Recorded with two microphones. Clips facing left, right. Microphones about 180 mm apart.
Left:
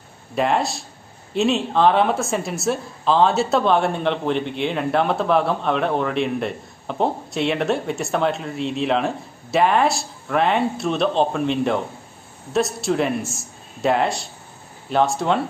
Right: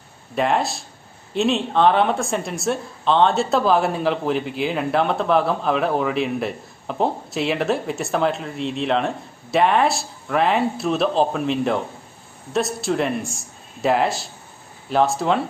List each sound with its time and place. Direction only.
0.4 s a woman's voice: centre (ahead or behind)